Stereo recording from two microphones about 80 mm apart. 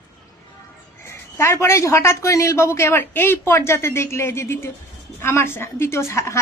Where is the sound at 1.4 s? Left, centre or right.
Left.